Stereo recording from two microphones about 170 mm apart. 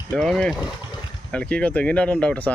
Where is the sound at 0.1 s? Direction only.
Centre (ahead or behind).